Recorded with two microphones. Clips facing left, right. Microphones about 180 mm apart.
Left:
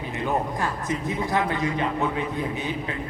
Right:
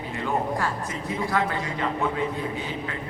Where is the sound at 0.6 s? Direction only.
20° left (ahead or behind).